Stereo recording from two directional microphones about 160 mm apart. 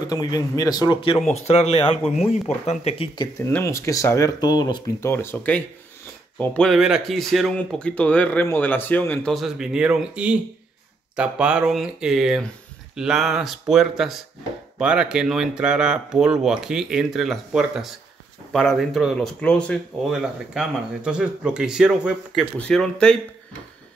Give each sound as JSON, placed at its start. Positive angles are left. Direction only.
{"t": 0.0, "sound": "speech", "side_deg": 25}
{"t": 1.3, "sound": "speech", "side_deg": 45}
{"t": 3.3, "sound": "speech", "side_deg": 15}
{"t": 5.0, "sound": "speech", "side_deg": 15}
{"t": 9.3, "sound": "speech", "side_deg": 0}
{"t": 20.1, "sound": "speech", "side_deg": -5}